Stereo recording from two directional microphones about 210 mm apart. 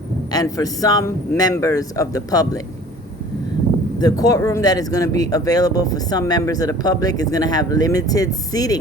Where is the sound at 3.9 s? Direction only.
15° left (ahead or behind).